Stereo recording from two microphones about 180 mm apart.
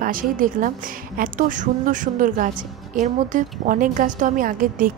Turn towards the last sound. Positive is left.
turn(degrees=-50)  # may be behind; listen again after turning